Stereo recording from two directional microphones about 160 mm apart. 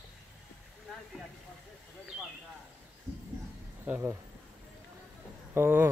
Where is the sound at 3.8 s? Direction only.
10° right (ahead or behind).